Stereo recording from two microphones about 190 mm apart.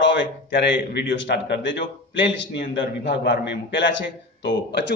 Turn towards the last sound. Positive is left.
turn(degrees=65)  # may be behind; listen again after turning